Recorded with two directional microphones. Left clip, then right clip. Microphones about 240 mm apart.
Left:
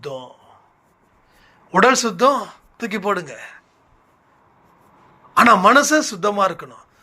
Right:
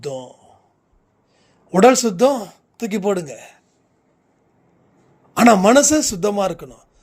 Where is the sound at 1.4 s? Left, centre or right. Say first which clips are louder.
Right 1 dB; right.